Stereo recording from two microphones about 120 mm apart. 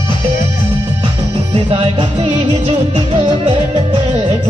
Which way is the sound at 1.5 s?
55° right (ahead or behind).